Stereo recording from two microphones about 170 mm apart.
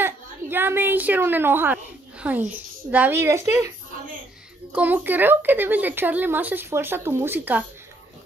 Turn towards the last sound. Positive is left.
turn(degrees=-10)  # may be behind; listen again after turning